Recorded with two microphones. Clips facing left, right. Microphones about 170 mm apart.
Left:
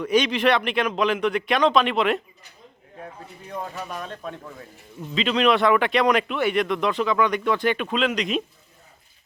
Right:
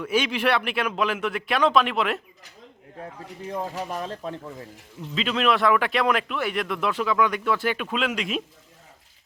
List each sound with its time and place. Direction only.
0.0 s speech: 5° right (ahead or behind)
3.5 s speech: 30° right (ahead or behind)
5.1 s speech: centre (ahead or behind)